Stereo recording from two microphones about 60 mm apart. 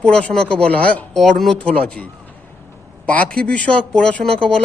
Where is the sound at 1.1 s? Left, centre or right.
Centre.